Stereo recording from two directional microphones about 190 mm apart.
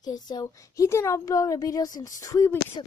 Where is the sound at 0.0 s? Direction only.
20° left (ahead or behind).